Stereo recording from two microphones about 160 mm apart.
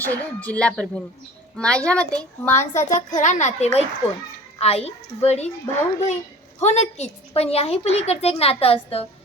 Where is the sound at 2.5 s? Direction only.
50° left (ahead or behind).